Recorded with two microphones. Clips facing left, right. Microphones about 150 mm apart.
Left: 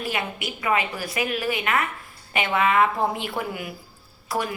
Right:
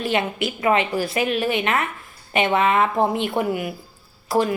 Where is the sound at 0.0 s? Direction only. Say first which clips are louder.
Right 6 dB; 25° right (ahead or behind).